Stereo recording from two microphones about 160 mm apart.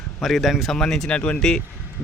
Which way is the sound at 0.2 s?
Centre (ahead or behind).